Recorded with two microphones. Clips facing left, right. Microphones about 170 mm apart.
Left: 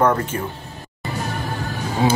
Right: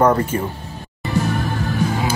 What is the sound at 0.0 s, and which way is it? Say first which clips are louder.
Speech: right 3 dB; 10° right (ahead or behind).